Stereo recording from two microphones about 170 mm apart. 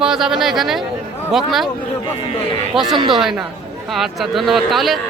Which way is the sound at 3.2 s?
Centre (ahead or behind).